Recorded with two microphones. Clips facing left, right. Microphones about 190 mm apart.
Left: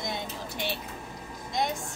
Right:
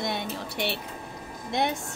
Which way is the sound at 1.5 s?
60° right (ahead or behind).